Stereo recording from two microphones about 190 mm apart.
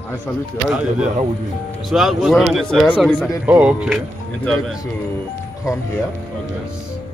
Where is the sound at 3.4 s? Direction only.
5° right (ahead or behind).